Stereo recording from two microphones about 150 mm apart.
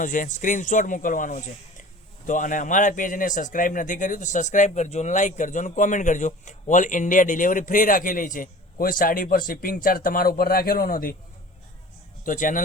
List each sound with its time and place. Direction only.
0.0 s a man's voice: 60° left (ahead or behind)
12.2 s a man's voice: 60° left (ahead or behind)